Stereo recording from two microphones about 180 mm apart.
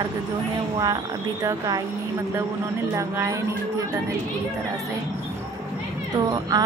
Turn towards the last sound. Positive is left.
turn(degrees=-20)  # may be behind; listen again after turning